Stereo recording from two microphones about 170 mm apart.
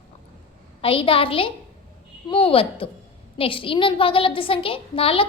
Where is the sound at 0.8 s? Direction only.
30° left (ahead or behind).